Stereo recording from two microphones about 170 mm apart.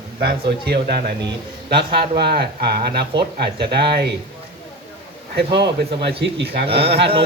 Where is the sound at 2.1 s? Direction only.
70° right (ahead or behind).